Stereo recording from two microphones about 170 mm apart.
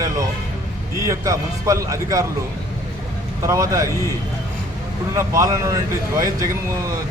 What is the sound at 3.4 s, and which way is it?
Speech, 20° right (ahead or behind).